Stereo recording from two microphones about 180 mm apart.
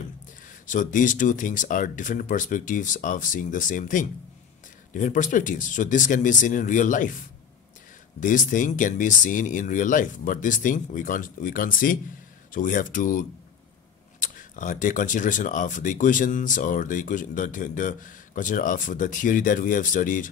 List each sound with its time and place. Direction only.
0.7 s speech: 45° left (ahead or behind)
8.2 s speech: 45° left (ahead or behind)
14.2 s speech: 45° left (ahead or behind)